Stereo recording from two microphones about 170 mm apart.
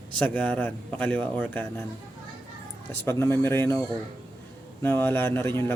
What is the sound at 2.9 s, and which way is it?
Speech, 15° left (ahead or behind).